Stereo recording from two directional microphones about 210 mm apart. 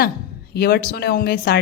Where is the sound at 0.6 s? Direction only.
50° left (ahead or behind).